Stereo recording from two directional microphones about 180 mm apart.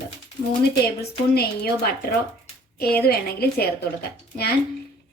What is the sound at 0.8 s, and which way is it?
Speech, 60° left (ahead or behind).